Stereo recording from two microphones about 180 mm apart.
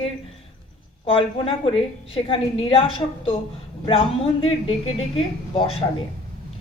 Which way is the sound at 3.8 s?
30° left (ahead or behind).